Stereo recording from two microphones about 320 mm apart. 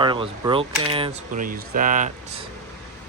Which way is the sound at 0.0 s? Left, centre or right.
Centre.